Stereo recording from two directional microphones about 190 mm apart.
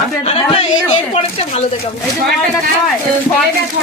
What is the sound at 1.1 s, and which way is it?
Speech, 30° left (ahead or behind).